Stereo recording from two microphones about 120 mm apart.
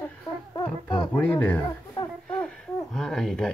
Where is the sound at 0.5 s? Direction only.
35° left (ahead or behind).